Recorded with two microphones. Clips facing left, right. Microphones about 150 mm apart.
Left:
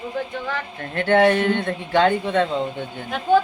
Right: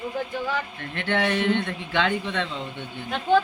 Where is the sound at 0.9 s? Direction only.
45° left (ahead or behind).